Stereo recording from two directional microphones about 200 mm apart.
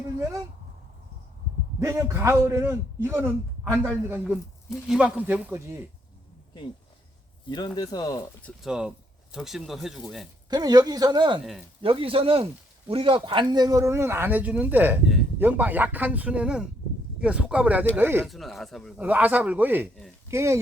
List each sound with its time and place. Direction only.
1.8 s speech: 15° right (ahead or behind)
7.8 s speech: 20° left (ahead or behind)
8.4 s speech: 5° left (ahead or behind)
10.5 s speech: 20° right (ahead or behind)
18.3 s speech: centre (ahead or behind)